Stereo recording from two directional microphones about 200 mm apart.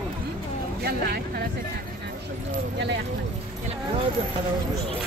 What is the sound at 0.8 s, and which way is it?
Speech, 50° right (ahead or behind).